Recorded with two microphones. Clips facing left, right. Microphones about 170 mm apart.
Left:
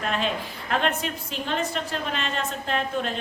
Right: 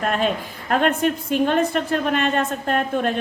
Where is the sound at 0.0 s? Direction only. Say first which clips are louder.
Right 5 dB; 50° right (ahead or behind).